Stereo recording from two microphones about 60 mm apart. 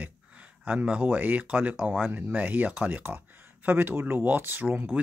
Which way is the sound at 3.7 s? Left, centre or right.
Right.